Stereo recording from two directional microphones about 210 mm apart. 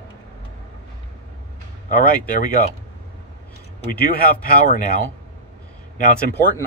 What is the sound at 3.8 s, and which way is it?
Speech, 45° left (ahead or behind).